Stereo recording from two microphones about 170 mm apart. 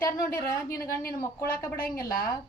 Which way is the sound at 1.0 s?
60° left (ahead or behind).